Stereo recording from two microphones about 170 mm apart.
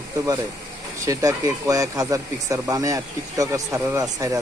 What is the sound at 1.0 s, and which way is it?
Speech, 20° right (ahead or behind).